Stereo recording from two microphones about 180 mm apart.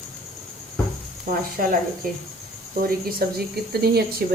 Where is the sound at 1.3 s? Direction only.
55° right (ahead or behind).